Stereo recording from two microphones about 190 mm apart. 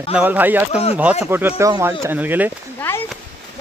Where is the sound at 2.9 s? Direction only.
10° left (ahead or behind).